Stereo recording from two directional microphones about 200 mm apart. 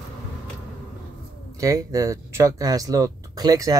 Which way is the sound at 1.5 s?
15° right (ahead or behind).